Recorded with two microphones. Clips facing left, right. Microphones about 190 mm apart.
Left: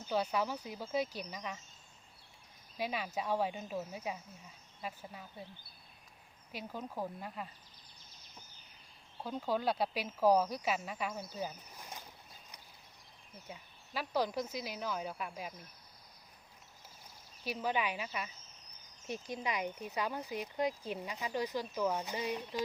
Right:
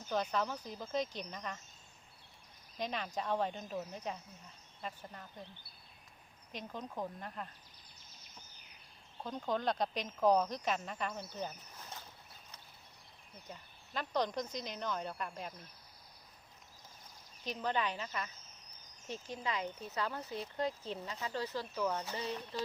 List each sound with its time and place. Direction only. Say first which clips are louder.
0.1 s speech: left 1 dB; 10° left (ahead or behind)
2.7 s speech: left 1 dB; 5° left (ahead or behind)
6.5 s speech: left 1 dB; 5° left (ahead or behind)
9.2 s speech: left 1 dB; 5° left (ahead or behind)
11.3 s a sound: left 1 dB; 10° left (ahead or behind)
13.5 s speech: left 1 dB; 5° left (ahead or behind)
17.4 s speech: left 1 dB; 10° left (ahead or behind)